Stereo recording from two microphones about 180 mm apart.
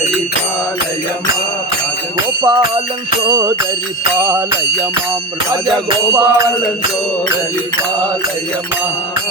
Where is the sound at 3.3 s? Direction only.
15° right (ahead or behind).